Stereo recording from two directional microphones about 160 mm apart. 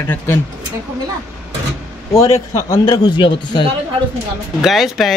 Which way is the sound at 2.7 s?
25° left (ahead or behind).